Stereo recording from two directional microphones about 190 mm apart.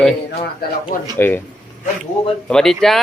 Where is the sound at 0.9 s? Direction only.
45° left (ahead or behind).